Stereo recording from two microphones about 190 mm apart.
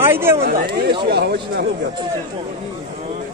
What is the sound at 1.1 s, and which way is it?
Speech, 55° right (ahead or behind).